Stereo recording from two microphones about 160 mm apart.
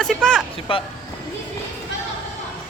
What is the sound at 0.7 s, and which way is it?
Speech, 35° left (ahead or behind).